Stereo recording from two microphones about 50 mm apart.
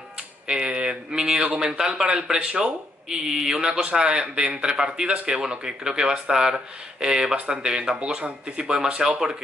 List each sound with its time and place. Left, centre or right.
0.5 s speech: centre